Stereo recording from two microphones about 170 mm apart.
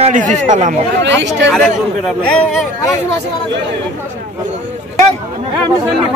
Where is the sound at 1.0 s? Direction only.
90° right.